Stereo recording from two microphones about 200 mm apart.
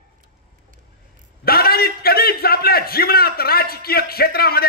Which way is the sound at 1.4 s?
50° left (ahead or behind).